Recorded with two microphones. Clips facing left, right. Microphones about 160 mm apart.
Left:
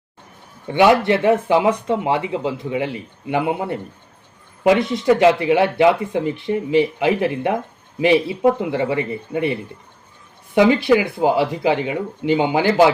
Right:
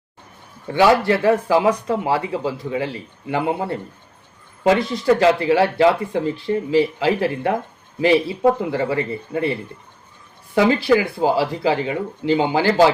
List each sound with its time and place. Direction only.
0.7 s speech: 20° left (ahead or behind)